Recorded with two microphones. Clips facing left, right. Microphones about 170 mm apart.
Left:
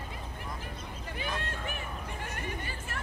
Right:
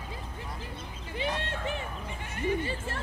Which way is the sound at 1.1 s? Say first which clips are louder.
Right 5 dB; 25° right (ahead or behind).